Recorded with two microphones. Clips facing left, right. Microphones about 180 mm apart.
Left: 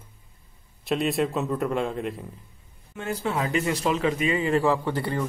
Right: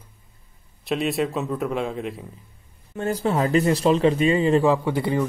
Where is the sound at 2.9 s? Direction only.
40° right (ahead or behind); by 5.2 s 10° right (ahead or behind).